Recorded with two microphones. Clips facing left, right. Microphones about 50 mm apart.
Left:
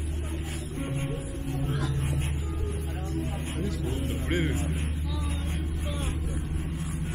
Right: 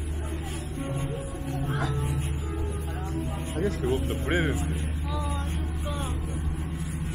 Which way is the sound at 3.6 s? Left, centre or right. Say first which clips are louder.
Right 7 dB; right.